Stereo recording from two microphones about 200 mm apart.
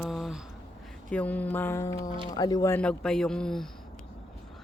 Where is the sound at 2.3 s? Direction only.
20° left (ahead or behind); by 3.7 s centre (ahead or behind).